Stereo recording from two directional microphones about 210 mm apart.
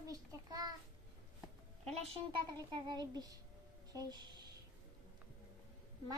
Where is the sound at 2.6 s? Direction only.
20° right (ahead or behind).